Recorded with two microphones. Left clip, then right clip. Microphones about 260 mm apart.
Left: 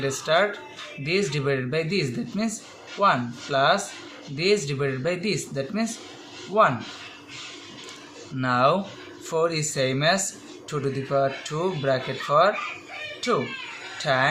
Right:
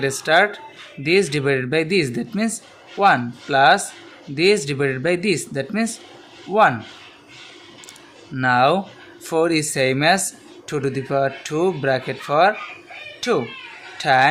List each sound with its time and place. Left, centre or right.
0.0 s speech: right
8.4 s speech: right
14.0 s speech: right